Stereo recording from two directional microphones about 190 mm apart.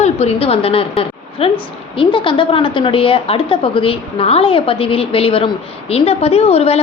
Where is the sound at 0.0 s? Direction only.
35° left (ahead or behind).